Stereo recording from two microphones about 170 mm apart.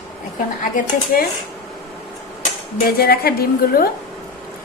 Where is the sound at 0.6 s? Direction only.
55° left (ahead or behind).